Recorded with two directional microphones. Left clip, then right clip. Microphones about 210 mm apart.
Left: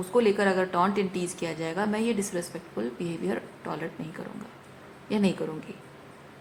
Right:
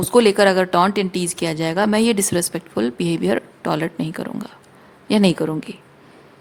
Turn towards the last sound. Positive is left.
turn(degrees=-50)  # may be behind; listen again after turning